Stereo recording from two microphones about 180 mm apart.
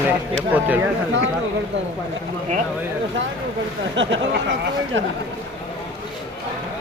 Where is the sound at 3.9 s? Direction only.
90° right.